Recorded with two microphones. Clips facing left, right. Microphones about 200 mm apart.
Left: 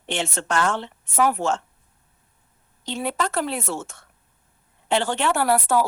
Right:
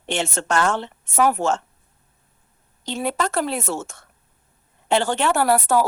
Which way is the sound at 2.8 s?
40° right (ahead or behind).